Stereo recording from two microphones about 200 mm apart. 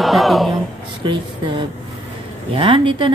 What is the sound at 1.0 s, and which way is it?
Speech, 25° right (ahead or behind).